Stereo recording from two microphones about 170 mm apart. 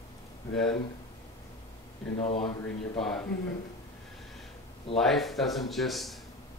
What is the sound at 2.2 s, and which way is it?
Speech, 35° left (ahead or behind).